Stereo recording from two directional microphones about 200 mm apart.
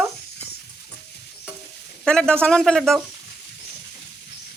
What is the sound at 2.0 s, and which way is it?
A man's voice, 5° left (ahead or behind).